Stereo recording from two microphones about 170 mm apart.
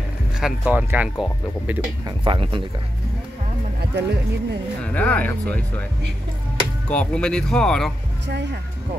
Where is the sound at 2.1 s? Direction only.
30° right (ahead or behind).